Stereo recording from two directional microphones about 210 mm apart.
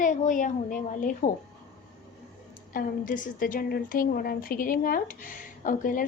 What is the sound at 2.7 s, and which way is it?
A woman's voice, 40° left (ahead or behind).